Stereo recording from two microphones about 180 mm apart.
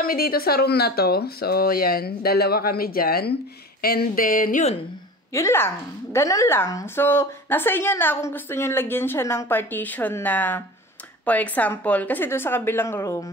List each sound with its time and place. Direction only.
0.0 s speech: 55° left (ahead or behind)
5.3 s a woman's voice: 15° left (ahead or behind)